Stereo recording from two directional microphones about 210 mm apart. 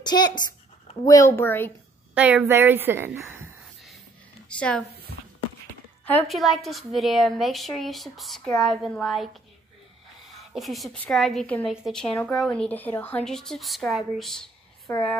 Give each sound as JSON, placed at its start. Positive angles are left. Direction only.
{"t": 0.0, "sound": "a woman's voice", "side_deg": 20}
{"t": 2.1, "sound": "a woman's voice", "side_deg": -5}
{"t": 4.6, "sound": "a woman's voice", "side_deg": 5}
{"t": 6.0, "sound": "a woman's voice", "side_deg": 5}
{"t": 10.5, "sound": "a woman's voice", "side_deg": 0}